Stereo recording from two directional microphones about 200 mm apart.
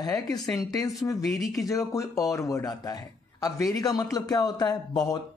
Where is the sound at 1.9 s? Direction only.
15° left (ahead or behind).